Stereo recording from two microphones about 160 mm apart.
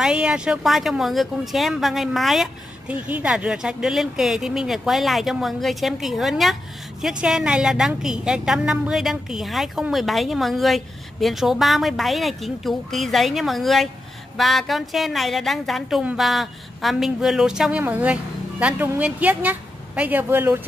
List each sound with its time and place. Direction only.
0.0 s a woman's voice: 5° right (ahead or behind)